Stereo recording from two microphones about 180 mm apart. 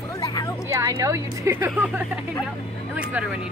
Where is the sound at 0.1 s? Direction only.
20° left (ahead or behind).